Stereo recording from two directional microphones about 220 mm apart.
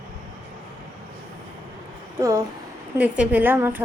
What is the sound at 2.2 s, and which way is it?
A woman's voice, 15° right (ahead or behind).